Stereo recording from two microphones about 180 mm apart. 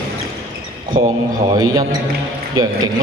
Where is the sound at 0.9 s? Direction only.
25° right (ahead or behind).